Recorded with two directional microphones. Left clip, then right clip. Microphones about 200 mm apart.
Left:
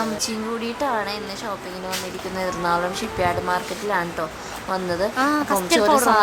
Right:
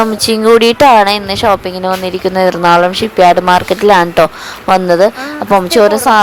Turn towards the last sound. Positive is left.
turn(degrees=-35)  # may be behind; listen again after turning